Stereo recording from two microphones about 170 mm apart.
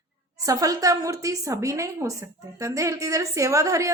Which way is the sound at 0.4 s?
20° right (ahead or behind).